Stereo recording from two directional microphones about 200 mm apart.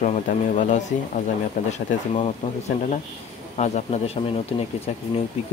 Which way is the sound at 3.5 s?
35° left (ahead or behind).